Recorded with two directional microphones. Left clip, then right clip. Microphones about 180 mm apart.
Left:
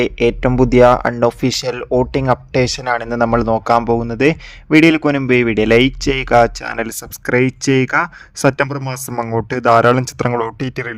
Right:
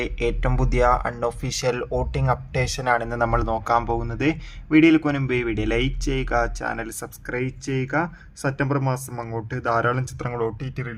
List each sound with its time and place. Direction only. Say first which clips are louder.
0.0 s speech: left 10 dB; 45° left (ahead or behind)
7.3 s speech: left 14 dB; 70° left (ahead or behind)